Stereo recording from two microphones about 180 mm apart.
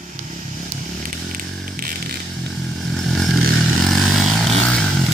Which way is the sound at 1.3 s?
50° right (ahead or behind).